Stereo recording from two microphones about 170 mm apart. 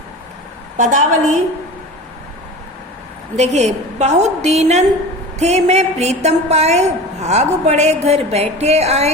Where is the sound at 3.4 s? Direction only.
40° right (ahead or behind).